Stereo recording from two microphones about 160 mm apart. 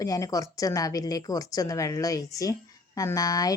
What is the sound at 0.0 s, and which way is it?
Speech, 20° left (ahead or behind).